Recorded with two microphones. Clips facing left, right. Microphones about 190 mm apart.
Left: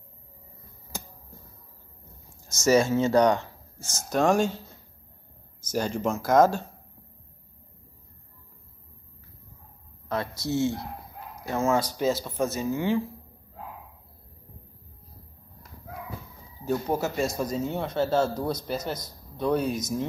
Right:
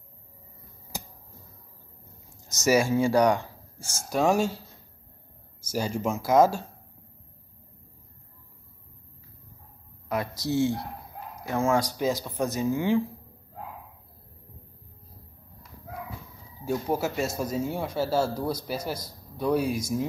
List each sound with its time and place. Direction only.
2.4 s speech: 15° right (ahead or behind)
5.7 s speech: 10° right (ahead or behind)
10.0 s speech: 15° right (ahead or behind)
16.6 s speech: 10° right (ahead or behind)